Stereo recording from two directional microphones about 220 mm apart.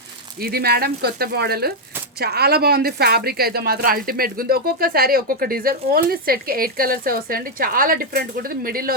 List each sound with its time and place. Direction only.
0.3 s speech: 45° right (ahead or behind)